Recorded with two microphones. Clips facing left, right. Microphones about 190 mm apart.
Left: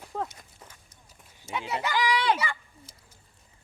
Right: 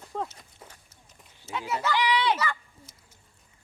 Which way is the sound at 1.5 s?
15° left (ahead or behind).